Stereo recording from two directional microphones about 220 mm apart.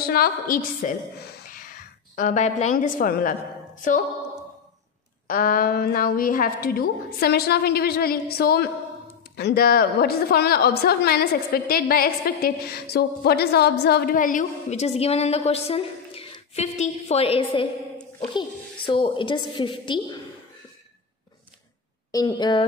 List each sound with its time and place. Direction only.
0.0 s a woman's voice: 45° left (ahead or behind)
5.3 s a woman's voice: 40° left (ahead or behind); by 17.6 s 25° left (ahead or behind)
18.9 s a woman's voice: 25° left (ahead or behind)
22.1 s a woman's voice: 20° left (ahead or behind)